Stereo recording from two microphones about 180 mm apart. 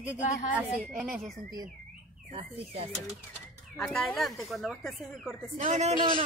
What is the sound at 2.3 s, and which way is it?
Speech, 35° right (ahead or behind).